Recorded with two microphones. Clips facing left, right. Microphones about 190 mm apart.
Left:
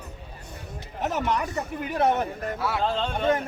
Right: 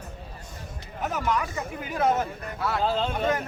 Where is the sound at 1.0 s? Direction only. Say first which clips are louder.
Left 1 dB; 40° left (ahead or behind).